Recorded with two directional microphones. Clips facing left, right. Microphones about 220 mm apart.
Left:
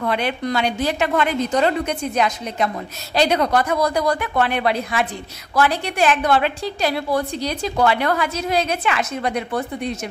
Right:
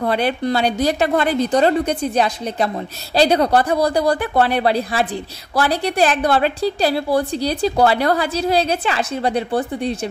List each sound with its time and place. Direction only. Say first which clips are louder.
0.0 s a woman's voice: right 3 dB; 35° right (ahead or behind)